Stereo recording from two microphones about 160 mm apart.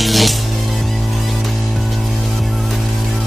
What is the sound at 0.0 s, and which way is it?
Music, centre (ahead or behind).